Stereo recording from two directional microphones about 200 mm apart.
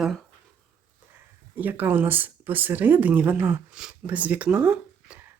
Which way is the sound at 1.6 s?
10° right (ahead or behind).